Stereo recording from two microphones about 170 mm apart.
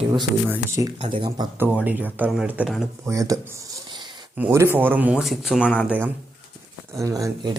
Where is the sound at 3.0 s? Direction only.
20° right (ahead or behind).